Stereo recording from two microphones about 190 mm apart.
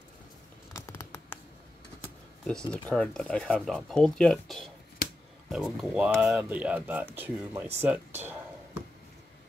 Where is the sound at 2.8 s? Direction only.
5° left (ahead or behind); by 7.7 s 10° right (ahead or behind).